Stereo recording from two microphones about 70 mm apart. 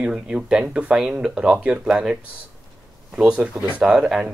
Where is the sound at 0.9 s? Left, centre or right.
Centre.